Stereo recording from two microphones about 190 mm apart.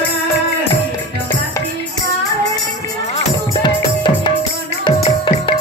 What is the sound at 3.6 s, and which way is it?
Music, 25° left (ahead or behind).